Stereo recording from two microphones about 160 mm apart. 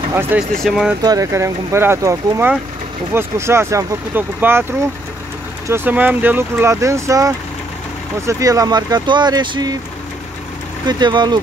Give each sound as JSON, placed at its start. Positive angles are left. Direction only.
{"t": 0.1, "sound": "speech", "side_deg": -15}
{"t": 0.4, "sound": "speech", "side_deg": 0}
{"t": 1.0, "sound": "speech", "side_deg": -20}
{"t": 5.7, "sound": "speech", "side_deg": -10}
{"t": 10.9, "sound": "speech", "side_deg": -25}